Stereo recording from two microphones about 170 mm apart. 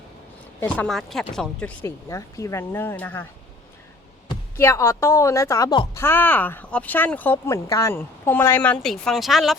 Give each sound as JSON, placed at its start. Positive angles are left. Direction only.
{"t": 0.6, "sound": "speech", "side_deg": 5}
{"t": 1.8, "sound": "speech", "side_deg": 20}
{"t": 4.5, "sound": "speech", "side_deg": 15}
{"t": 5.9, "sound": "speech", "side_deg": 15}